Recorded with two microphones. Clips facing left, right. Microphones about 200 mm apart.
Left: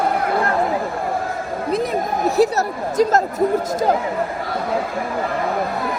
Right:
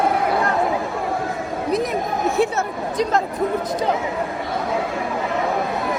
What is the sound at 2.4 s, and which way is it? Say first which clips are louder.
Speech: left 3 dB; 40° left (ahead or behind).